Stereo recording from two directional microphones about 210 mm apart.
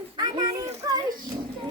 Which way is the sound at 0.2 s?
15° right (ahead or behind).